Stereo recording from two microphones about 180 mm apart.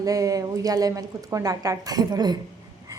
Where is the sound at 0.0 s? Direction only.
20° right (ahead or behind).